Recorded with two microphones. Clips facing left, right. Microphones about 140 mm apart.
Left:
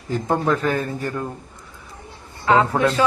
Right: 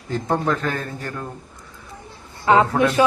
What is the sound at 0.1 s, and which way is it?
A man's voice, 10° left (ahead or behind).